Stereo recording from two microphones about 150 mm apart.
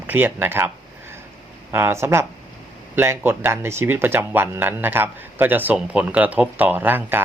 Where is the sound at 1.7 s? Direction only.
15° right (ahead or behind).